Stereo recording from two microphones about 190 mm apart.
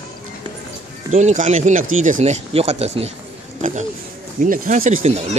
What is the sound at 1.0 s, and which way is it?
Speech, 40° right (ahead or behind).